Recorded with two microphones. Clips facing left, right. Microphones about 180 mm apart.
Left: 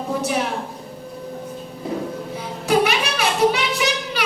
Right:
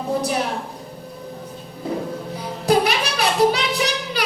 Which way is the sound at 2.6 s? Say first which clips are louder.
Even; 35° right (ahead or behind).